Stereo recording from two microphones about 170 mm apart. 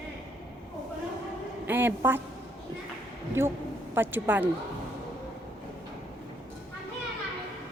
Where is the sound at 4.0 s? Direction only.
10° right (ahead or behind).